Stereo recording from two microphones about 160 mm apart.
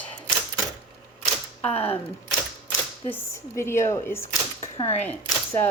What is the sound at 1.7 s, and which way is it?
Speech, 35° left (ahead or behind).